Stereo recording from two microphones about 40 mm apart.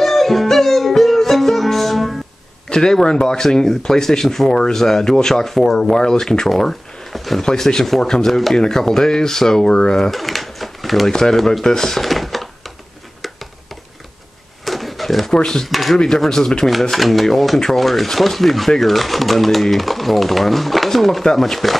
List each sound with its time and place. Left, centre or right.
0.0 s music: centre
2.7 s speech: centre
10.1 s typewriter: centre
11.1 s speech: centre
13.2 s a sound: centre
14.6 s a sound: centre
15.3 s speech: centre
15.6 s speech: centre
16.3 s speech: centre
16.9 s speech: centre